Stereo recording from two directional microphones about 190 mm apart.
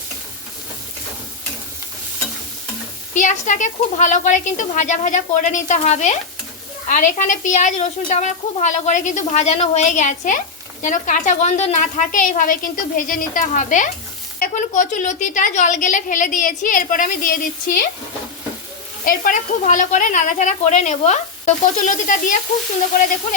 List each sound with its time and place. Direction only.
3.2 s a woman's voice: 40° left (ahead or behind)
19.0 s a woman's voice: 45° left (ahead or behind)